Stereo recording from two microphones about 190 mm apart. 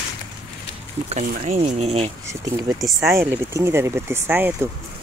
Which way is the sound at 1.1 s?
35° right (ahead or behind).